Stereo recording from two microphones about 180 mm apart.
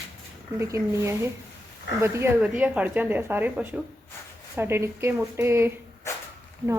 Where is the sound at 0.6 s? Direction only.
15° right (ahead or behind).